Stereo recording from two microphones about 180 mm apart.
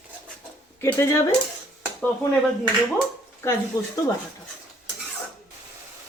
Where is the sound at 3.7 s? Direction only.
20° left (ahead or behind).